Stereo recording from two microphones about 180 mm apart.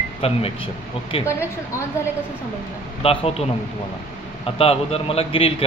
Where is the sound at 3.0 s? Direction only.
35° left (ahead or behind).